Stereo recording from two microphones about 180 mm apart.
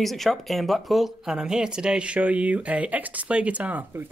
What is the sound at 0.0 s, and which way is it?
Speech, centre (ahead or behind).